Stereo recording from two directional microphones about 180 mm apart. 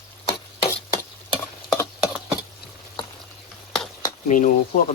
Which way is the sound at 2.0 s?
5° right (ahead or behind).